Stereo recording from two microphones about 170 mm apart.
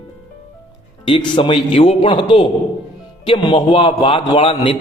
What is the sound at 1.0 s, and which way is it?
A man's voice, 30° left (ahead or behind).